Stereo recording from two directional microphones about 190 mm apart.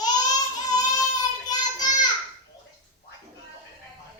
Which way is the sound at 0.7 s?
20° left (ahead or behind).